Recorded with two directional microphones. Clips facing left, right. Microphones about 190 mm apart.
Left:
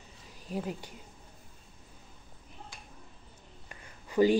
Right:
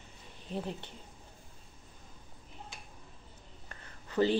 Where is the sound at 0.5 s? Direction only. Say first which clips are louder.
Left 2 dB; 5° left (ahead or behind).